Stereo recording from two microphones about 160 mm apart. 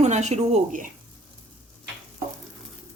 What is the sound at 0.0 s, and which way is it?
Speech, 45° right (ahead or behind).